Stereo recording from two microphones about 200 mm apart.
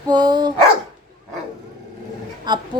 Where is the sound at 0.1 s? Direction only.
20° right (ahead or behind).